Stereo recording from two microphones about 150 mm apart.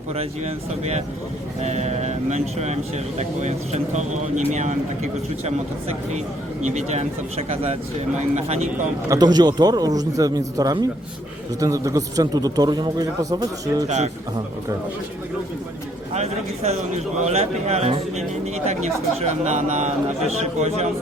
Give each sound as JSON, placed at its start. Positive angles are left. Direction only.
{"t": 0.1, "sound": "speech", "side_deg": -45}
{"t": 6.7, "sound": "speech", "side_deg": -50}
{"t": 9.0, "sound": "a man's voice", "side_deg": -25}
{"t": 13.8, "sound": "speech", "side_deg": -50}
{"t": 16.1, "sound": "speech", "side_deg": -45}